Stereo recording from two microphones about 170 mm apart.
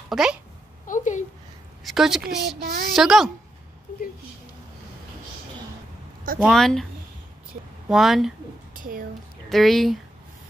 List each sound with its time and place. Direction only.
0.1 s a child's voice: 5° right (ahead or behind)
0.8 s a woman's voice: 50° left (ahead or behind)
1.9 s speech: centre (ahead or behind)
2.6 s a woman's voice: 65° right (ahead or behind)
2.9 s speech: centre (ahead or behind)
6.4 s speech: centre (ahead or behind)
7.9 s speech: centre (ahead or behind)
8.7 s a sound: 55° right (ahead or behind)
9.5 s speech: centre (ahead or behind)